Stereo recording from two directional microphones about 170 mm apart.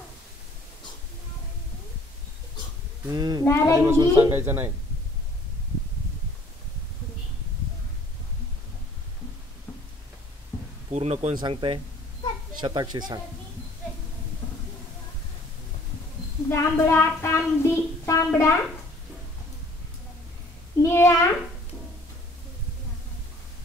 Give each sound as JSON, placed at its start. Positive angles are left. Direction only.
{"t": 3.1, "sound": "speech", "side_deg": -25}
{"t": 3.4, "sound": "a woman's voice", "side_deg": 15}
{"t": 3.7, "sound": "a woman's voice", "side_deg": -15}
{"t": 10.9, "sound": "speech", "side_deg": -35}
{"t": 16.4, "sound": "a woman's voice", "side_deg": 15}
{"t": 20.8, "sound": "a child's voice", "side_deg": 15}